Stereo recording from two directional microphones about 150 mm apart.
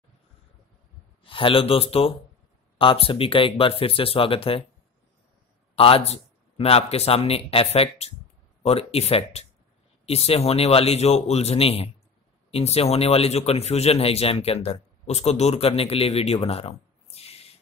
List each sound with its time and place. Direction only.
1.2 s speech: 35° left (ahead or behind)
5.8 s a man's voice: 40° left (ahead or behind)